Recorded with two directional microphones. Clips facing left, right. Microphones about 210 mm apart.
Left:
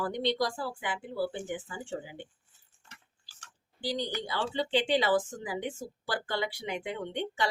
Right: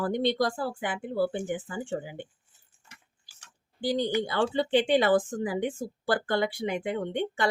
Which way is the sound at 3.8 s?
55° right (ahead or behind).